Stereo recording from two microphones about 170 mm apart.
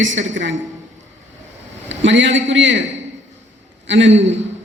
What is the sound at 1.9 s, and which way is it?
Speech, 90° right.